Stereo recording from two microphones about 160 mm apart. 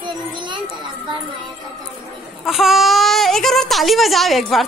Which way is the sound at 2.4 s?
Centre (ahead or behind).